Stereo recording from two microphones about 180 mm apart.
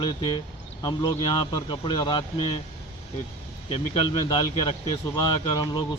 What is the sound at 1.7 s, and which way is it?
Speech, 25° left (ahead or behind).